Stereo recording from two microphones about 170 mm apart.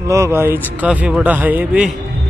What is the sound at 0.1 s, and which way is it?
A man's voice, 15° right (ahead or behind).